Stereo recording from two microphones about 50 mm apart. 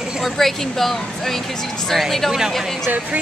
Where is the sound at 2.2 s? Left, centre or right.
Centre.